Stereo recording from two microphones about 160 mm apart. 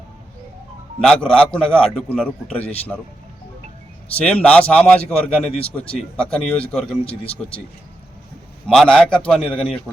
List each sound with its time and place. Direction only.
1.0 s a man's voice: 5° left (ahead or behind)
4.2 s a man's voice: 5° left (ahead or behind)
7.0 s speech: 35° left (ahead or behind)
8.6 s a man's voice: 5° left (ahead or behind)